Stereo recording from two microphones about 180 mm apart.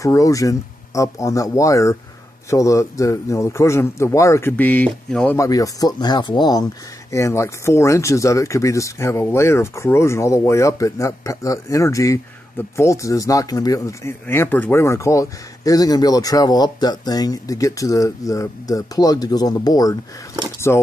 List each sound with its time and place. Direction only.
0.0 s speech: 20° left (ahead or behind)
5.4 s speech: 20° left (ahead or behind)